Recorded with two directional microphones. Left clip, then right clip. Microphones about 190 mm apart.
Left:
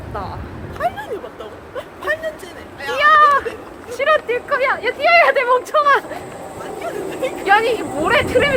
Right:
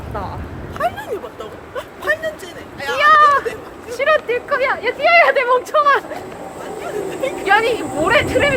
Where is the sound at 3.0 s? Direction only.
Centre (ahead or behind).